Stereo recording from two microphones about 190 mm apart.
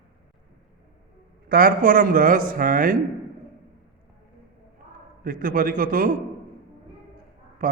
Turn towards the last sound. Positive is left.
turn(degrees=-45)  # may be behind; listen again after turning